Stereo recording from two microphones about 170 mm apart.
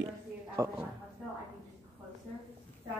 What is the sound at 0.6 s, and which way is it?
Speech, 20° right (ahead or behind).